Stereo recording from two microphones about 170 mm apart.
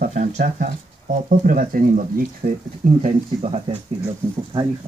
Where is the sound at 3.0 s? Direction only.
35° right (ahead or behind).